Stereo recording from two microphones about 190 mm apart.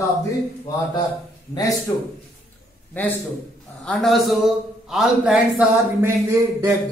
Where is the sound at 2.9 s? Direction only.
10° left (ahead or behind).